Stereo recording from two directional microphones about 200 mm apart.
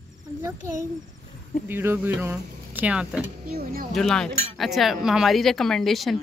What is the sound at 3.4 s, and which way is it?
Speech, 50° right (ahead or behind).